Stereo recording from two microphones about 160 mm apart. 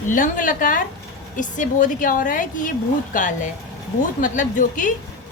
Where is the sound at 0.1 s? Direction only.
55° left (ahead or behind).